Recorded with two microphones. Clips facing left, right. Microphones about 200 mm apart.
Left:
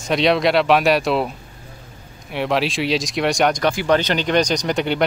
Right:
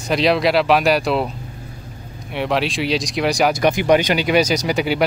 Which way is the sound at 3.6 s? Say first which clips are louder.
Right 3 dB; 15° right (ahead or behind).